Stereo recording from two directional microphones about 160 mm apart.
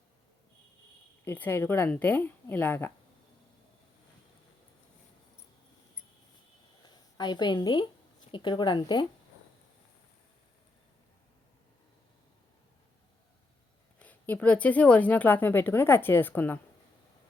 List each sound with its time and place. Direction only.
1.2 s a woman's voice: 15° left (ahead or behind)
6.8 s speech: 25° left (ahead or behind)
14.0 s a woman's voice: 10° left (ahead or behind)